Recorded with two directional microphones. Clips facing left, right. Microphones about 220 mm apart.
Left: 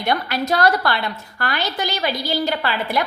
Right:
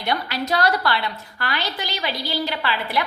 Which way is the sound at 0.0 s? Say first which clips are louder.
Left 3 dB; 50° left (ahead or behind).